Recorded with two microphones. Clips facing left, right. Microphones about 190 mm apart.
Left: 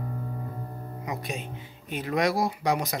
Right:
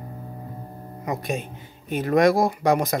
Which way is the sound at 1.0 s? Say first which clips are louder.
Right 7 dB; 50° right (ahead or behind).